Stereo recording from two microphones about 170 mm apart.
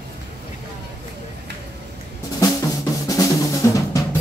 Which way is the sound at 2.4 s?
20° left (ahead or behind).